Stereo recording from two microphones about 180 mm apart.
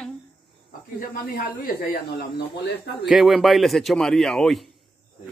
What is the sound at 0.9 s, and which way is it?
Speech, 55° left (ahead or behind).